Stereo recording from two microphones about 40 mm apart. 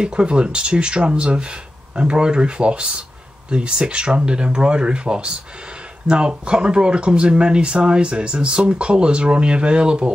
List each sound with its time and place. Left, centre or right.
0.0 s speech: right